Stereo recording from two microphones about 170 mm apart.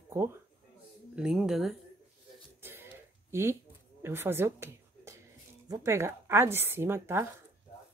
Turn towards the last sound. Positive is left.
turn(degrees=-15)  # may be behind; listen again after turning